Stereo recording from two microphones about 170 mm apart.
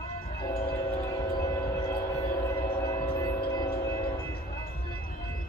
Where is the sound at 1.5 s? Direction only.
20° left (ahead or behind).